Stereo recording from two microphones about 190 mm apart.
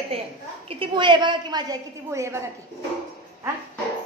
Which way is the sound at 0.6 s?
25° right (ahead or behind).